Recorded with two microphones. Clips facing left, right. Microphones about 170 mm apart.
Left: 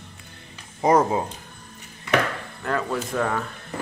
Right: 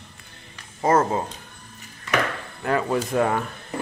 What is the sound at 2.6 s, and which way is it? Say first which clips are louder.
Speech: right 3 dB; 15° right (ahead or behind).